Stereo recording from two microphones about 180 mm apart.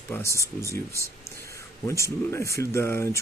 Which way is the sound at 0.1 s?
15° left (ahead or behind).